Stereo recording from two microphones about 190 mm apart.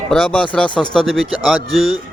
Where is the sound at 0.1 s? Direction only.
5° left (ahead or behind).